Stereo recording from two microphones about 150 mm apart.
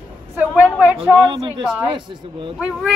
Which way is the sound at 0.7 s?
5° right (ahead or behind).